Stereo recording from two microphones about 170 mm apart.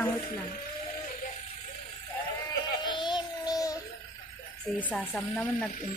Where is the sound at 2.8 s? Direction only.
25° left (ahead or behind).